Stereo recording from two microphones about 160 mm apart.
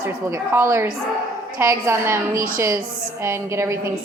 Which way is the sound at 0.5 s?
15° right (ahead or behind).